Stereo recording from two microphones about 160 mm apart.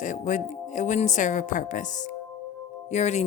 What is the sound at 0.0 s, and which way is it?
Speech, 50° left (ahead or behind).